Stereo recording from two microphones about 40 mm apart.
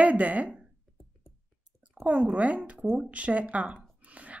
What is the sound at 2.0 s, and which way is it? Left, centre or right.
A woman's voice, right.